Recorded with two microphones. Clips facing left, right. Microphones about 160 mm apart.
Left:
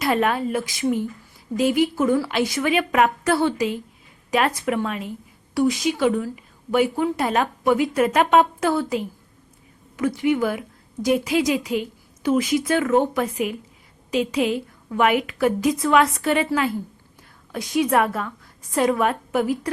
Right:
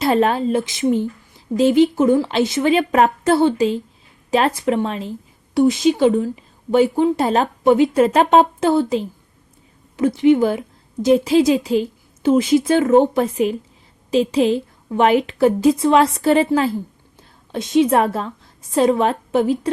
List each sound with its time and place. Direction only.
0.0 s a woman's voice: 30° right (ahead or behind)
17.5 s a woman's voice: 25° right (ahead or behind)